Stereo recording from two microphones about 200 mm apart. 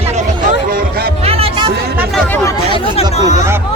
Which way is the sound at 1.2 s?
30° right (ahead or behind).